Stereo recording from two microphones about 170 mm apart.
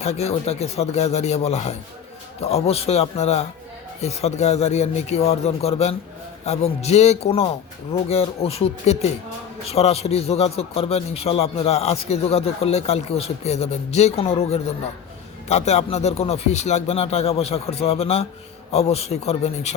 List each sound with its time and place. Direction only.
0.0 s a man's voice: 40° left (ahead or behind)